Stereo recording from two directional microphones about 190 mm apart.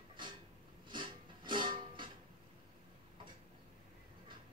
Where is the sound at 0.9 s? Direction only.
25° right (ahead or behind).